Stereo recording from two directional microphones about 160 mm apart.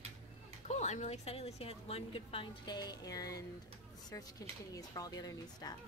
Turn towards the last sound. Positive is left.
turn(degrees=25)  # may be behind; listen again after turning